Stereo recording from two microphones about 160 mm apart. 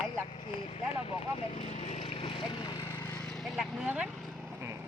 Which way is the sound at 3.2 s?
Centre (ahead or behind).